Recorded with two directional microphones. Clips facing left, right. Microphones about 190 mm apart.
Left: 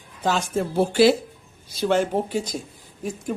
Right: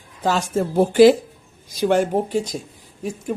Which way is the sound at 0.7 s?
15° right (ahead or behind).